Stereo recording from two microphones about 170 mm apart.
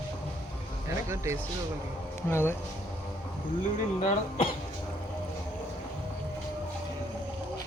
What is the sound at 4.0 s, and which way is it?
Speech, 40° left (ahead or behind).